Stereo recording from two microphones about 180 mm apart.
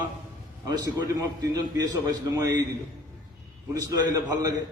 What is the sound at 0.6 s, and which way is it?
A man's voice, 20° right (ahead or behind).